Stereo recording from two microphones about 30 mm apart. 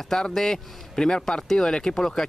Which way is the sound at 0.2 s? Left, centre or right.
Left.